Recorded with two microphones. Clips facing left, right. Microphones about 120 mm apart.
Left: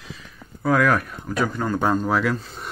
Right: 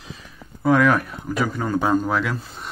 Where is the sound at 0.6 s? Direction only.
Centre (ahead or behind).